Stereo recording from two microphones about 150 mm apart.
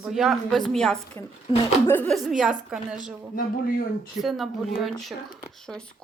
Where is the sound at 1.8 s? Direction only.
15° left (ahead or behind).